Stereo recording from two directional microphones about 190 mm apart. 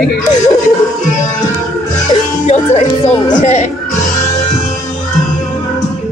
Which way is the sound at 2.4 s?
35° left (ahead or behind).